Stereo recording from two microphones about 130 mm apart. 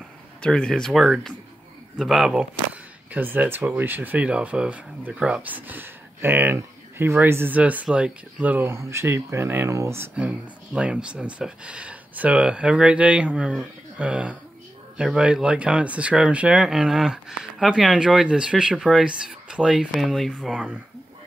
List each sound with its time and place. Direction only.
0.4 s speech: 5° left (ahead or behind)